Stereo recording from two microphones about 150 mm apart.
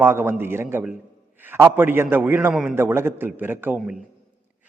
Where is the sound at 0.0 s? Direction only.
15° right (ahead or behind).